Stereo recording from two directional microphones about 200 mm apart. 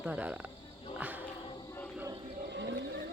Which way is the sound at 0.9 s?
10° right (ahead or behind).